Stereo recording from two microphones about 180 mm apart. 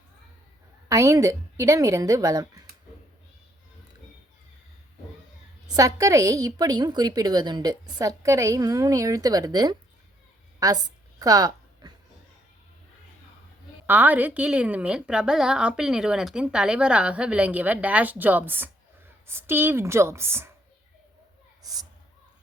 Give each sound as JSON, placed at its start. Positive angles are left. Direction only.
{"t": 0.9, "sound": "a woman's voice", "side_deg": -15}
{"t": 5.6, "sound": "a woman's voice", "side_deg": -20}
{"t": 11.2, "sound": "a sound", "side_deg": -20}
{"t": 13.8, "sound": "a woman's voice", "side_deg": -10}